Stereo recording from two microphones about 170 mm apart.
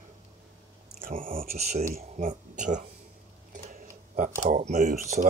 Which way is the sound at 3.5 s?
50° right (ahead or behind).